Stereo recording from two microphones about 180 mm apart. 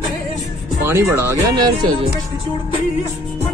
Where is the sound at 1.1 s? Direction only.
20° right (ahead or behind).